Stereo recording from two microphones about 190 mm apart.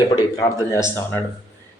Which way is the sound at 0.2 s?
15° left (ahead or behind).